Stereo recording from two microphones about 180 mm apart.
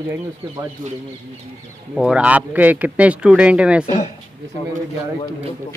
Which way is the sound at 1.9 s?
5° right (ahead or behind).